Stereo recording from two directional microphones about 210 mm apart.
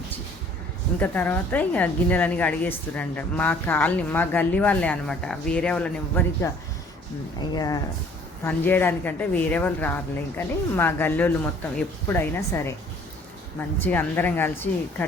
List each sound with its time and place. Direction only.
0.9 s a woman's voice: 10° left (ahead or behind)
7.3 s a woman's voice: 20° left (ahead or behind)